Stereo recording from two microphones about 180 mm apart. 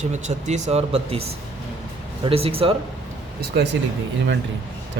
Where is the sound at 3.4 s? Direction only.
75° right (ahead or behind).